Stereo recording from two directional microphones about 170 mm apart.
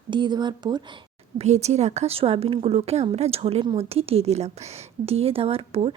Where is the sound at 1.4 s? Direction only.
40° right (ahead or behind).